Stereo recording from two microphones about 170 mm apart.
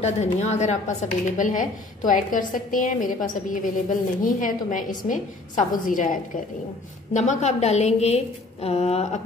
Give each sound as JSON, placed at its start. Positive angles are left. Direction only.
{"t": 0.0, "sound": "a woman's voice", "side_deg": 40}
{"t": 7.2, "sound": "a woman's voice", "side_deg": 40}